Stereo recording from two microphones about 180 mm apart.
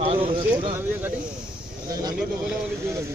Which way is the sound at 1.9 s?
20° right (ahead or behind).